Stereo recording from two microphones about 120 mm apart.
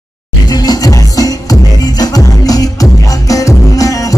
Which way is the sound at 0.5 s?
30° left (ahead or behind).